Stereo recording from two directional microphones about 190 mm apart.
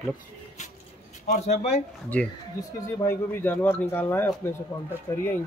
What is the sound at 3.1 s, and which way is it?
Speech, 10° left (ahead or behind).